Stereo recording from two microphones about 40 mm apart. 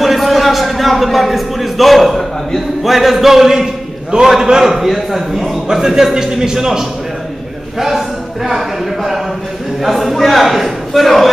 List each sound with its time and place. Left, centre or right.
0.0 s a sound: centre
2.8 s a man's voice: centre
8.5 s a man's voice: centre